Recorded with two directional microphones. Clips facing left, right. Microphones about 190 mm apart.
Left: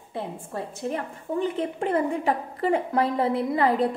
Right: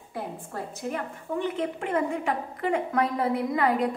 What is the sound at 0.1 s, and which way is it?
A woman's voice, 25° left (ahead or behind).